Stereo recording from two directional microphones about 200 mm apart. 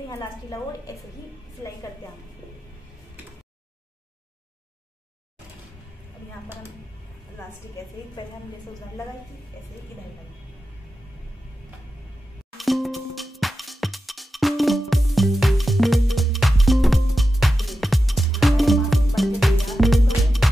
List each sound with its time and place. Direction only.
0.1 s a woman's voice: 15° left (ahead or behind)
12.5 s music: centre (ahead or behind)